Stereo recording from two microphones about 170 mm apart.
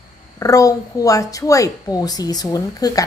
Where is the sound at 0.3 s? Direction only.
20° left (ahead or behind).